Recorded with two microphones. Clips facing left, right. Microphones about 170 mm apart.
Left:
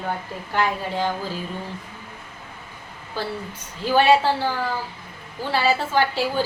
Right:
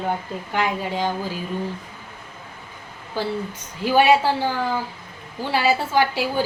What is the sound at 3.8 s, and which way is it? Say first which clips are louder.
Speech: right 1 dB; 10° right (ahead or behind).